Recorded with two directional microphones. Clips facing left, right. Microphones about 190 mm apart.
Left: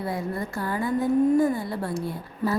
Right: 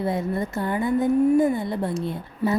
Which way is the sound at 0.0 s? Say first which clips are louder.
Right 4 dB; 20° right (ahead or behind).